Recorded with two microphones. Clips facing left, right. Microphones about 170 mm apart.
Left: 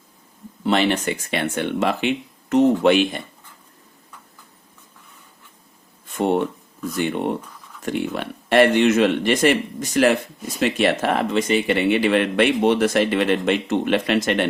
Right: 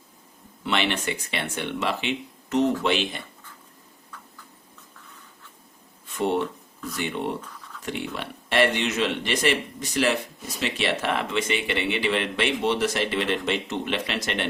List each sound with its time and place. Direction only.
0.6 s speech: 40° left (ahead or behind)
6.1 s speech: 50° left (ahead or behind)